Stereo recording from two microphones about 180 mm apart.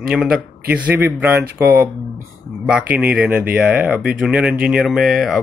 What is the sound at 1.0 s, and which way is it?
Speech, 10° right (ahead or behind).